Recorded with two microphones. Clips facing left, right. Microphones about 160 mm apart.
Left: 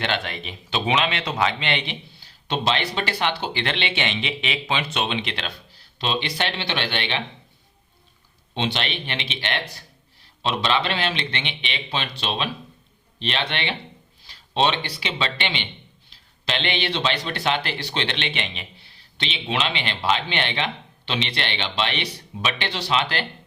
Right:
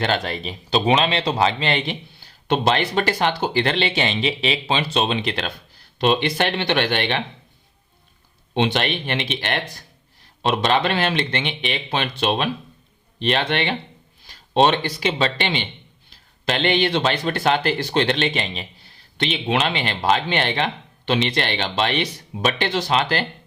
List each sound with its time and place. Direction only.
0.0 s speech: 40° right (ahead or behind)
6.0 s speech: 55° right (ahead or behind)
8.5 s a man's voice: 55° right (ahead or behind); by 18.9 s 40° right (ahead or behind)
19.1 s speech: 50° right (ahead or behind)